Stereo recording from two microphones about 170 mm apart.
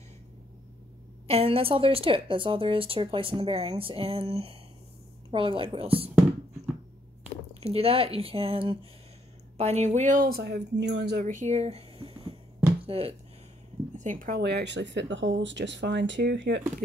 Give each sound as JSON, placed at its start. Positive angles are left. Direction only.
{"t": 1.2, "sound": "a woman's voice", "side_deg": -35}
{"t": 7.6, "sound": "a woman's voice", "side_deg": -35}
{"t": 10.4, "sound": "speech", "side_deg": -85}
{"t": 13.9, "sound": "speech", "side_deg": -50}